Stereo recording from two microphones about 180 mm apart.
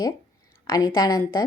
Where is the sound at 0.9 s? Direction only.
20° left (ahead or behind).